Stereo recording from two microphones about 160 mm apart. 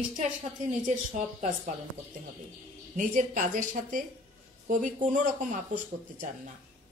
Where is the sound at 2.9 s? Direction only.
55° right (ahead or behind).